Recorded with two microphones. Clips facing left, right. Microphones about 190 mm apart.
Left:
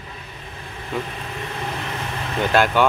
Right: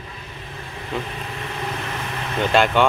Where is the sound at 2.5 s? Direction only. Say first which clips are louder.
Even; centre (ahead or behind).